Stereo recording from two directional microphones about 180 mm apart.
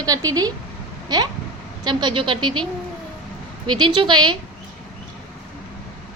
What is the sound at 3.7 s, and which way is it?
Speech, 25° right (ahead or behind).